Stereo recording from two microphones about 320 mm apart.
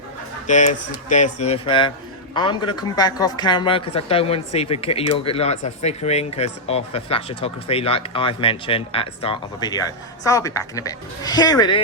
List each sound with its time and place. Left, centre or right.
0.4 s speech: left